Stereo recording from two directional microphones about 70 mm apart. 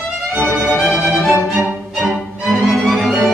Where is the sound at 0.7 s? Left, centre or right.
Centre.